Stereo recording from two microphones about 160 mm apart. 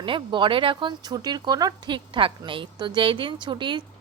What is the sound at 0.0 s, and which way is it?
Speech, 30° right (ahead or behind).